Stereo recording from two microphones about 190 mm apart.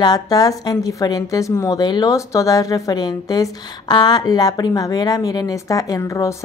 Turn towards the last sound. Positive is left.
turn(degrees=15)  # may be behind; listen again after turning